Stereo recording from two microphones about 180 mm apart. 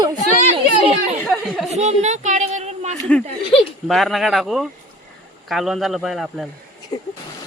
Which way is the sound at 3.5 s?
Centre (ahead or behind).